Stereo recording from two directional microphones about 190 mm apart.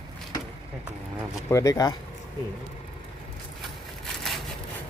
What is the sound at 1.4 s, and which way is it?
Speech, 15° left (ahead or behind).